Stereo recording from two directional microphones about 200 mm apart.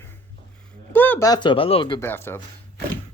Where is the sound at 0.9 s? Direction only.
10° left (ahead or behind).